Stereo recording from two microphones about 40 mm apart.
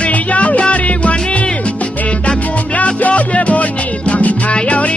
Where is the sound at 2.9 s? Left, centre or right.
Left.